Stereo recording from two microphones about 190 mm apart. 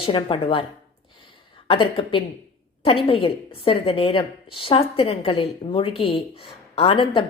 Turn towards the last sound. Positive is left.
turn(degrees=25)  # may be behind; listen again after turning